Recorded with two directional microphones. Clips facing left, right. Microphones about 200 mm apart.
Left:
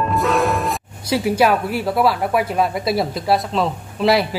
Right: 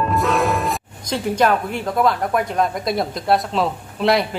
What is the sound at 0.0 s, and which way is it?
Speech, centre (ahead or behind).